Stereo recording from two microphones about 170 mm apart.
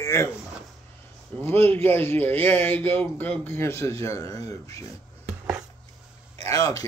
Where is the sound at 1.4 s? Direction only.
10° left (ahead or behind).